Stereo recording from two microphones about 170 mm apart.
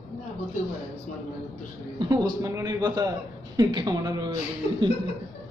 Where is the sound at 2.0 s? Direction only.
25° right (ahead or behind).